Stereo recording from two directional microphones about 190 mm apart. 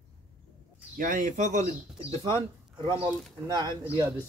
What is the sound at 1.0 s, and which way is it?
Speech, 45° right (ahead or behind).